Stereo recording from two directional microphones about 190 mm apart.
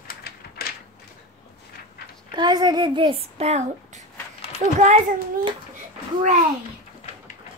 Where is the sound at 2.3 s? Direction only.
20° right (ahead or behind); by 5.0 s 40° right (ahead or behind).